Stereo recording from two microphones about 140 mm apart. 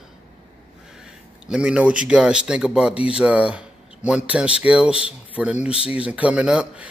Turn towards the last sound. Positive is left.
turn(degrees=-5)  # may be behind; listen again after turning